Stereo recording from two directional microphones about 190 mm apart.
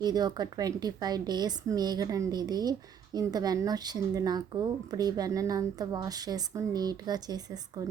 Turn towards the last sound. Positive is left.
turn(degrees=-20)  # may be behind; listen again after turning